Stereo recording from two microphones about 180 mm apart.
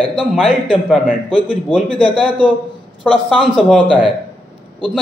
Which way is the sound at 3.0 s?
Centre (ahead or behind).